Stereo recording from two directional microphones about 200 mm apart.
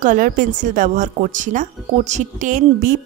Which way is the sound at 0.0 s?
40° right (ahead or behind).